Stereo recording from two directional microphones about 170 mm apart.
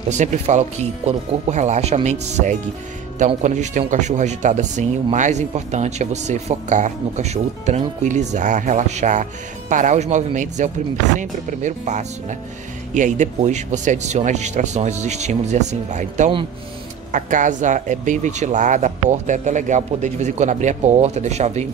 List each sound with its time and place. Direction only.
0.1 s speech: 45° right (ahead or behind)